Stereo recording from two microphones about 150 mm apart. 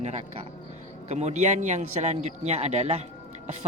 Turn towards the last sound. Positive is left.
turn(degrees=-45)  # may be behind; listen again after turning